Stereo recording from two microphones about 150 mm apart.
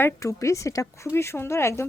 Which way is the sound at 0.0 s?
20° left (ahead or behind).